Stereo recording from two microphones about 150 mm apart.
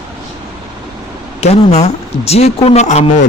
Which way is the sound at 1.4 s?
45° left (ahead or behind).